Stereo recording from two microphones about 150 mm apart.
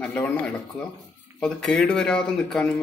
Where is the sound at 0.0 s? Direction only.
10° left (ahead or behind).